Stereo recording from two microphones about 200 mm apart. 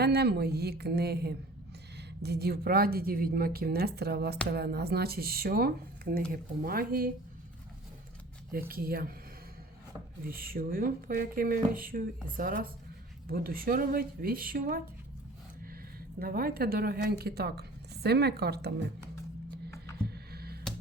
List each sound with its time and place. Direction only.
0.0 s a woman's voice: 50° right (ahead or behind)
8.7 s a woman's voice: 50° right (ahead or behind)
10.2 s a woman's voice: 45° right (ahead or behind)
16.2 s a woman's voice: 50° right (ahead or behind)
20.1 s a sound: 50° right (ahead or behind)